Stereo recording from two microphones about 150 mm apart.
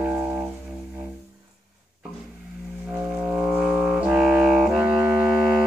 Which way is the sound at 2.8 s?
10° right (ahead or behind).